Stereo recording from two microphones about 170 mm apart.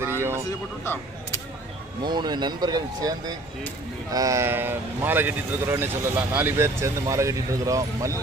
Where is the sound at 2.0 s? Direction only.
25° right (ahead or behind).